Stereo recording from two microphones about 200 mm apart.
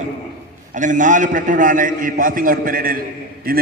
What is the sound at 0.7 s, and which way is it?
A man's voice, 40° right (ahead or behind).